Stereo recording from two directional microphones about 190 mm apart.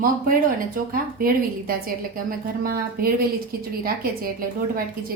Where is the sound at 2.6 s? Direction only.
50° right (ahead or behind).